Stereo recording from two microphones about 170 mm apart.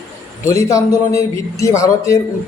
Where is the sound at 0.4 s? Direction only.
15° left (ahead or behind).